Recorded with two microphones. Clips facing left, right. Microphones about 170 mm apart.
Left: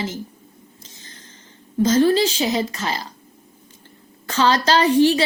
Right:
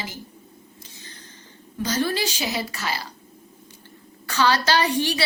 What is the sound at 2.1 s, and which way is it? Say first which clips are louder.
Speech: left 8 dB; 35° left (ahead or behind).